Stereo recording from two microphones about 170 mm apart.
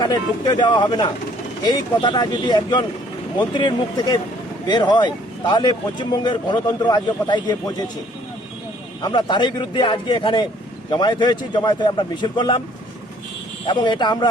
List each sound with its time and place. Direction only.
0.0 s speech: 25° left (ahead or behind)
9.0 s speech: 25° left (ahead or behind)
13.7 s speech: 25° left (ahead or behind)